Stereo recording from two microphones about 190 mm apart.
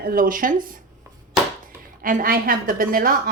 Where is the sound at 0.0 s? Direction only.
50° right (ahead or behind).